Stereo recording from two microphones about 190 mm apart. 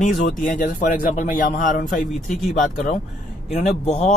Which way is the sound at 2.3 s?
Centre (ahead or behind).